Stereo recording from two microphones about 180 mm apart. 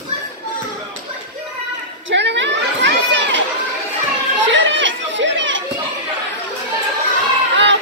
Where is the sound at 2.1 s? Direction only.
80° right.